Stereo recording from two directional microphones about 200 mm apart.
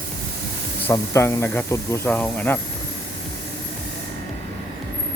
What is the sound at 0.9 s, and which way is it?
Speech, 15° left (ahead or behind).